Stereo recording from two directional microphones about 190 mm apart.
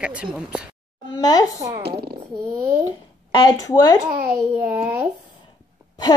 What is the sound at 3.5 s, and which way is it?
Speech, 20° left (ahead or behind).